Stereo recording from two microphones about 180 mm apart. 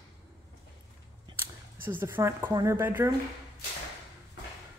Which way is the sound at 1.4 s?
10° right (ahead or behind).